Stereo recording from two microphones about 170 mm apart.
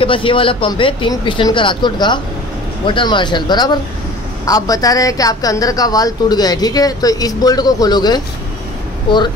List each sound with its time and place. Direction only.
0.0 s a woman's voice: 30° left (ahead or behind)